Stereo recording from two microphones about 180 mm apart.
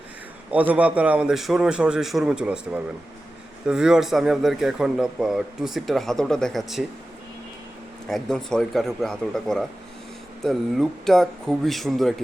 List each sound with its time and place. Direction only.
0.5 s a man's voice: 10° right (ahead or behind)
8.0 s a man's voice: 5° left (ahead or behind)